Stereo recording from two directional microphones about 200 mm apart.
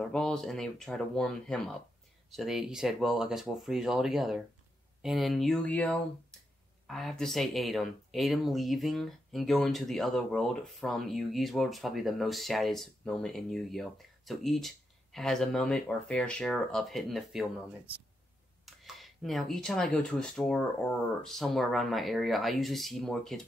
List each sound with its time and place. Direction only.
0.1 s speech: 5° left (ahead or behind)
18.7 s speech: centre (ahead or behind)